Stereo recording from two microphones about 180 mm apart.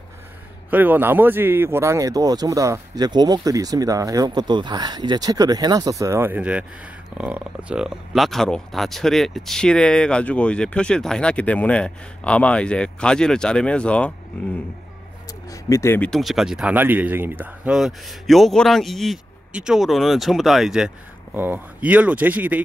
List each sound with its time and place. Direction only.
0.7 s speech: 10° right (ahead or behind); by 14.1 s 5° left (ahead or behind)
15.5 s speech: 15° left (ahead or behind); by 22.6 s 10° right (ahead or behind)